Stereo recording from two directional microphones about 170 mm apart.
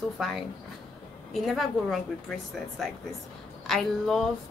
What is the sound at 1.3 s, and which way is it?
A woman's voice, centre (ahead or behind).